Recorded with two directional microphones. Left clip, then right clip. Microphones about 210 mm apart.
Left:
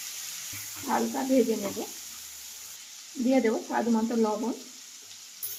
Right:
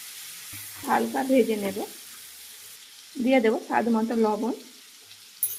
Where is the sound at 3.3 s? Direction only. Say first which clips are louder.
Right 4 dB; 45° right (ahead or behind).